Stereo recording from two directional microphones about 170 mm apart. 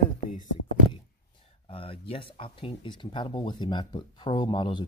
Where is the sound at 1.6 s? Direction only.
35° left (ahead or behind).